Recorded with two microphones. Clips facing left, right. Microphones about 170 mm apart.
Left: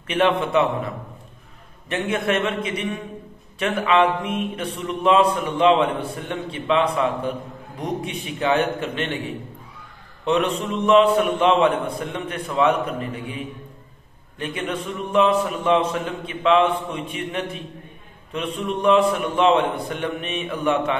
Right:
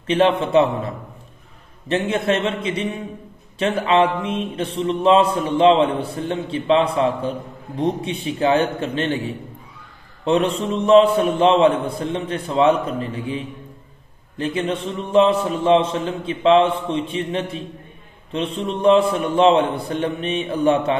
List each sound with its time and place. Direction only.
0.0 s a man's voice: 30° right (ahead or behind)
1.9 s a man's voice: 30° right (ahead or behind)
10.2 s a man's voice: 30° right (ahead or behind)